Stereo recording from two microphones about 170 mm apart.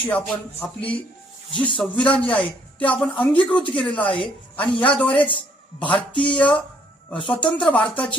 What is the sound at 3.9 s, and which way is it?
Speech, 30° left (ahead or behind).